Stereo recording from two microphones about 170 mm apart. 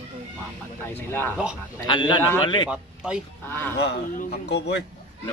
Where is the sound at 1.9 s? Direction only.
25° left (ahead or behind).